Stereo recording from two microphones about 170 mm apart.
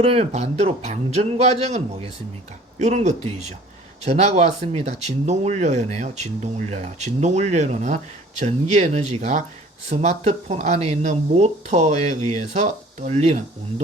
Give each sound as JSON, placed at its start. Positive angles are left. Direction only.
{"t": 0.0, "sound": "speech", "side_deg": -35}